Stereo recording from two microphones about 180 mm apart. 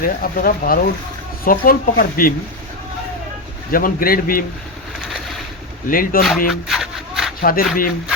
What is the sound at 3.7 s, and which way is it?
Speech, 55° left (ahead or behind).